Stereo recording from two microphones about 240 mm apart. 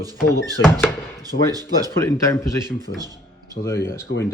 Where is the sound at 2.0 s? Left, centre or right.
Centre.